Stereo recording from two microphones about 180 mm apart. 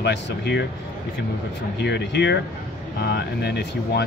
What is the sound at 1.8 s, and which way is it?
Speech, 70° left (ahead or behind).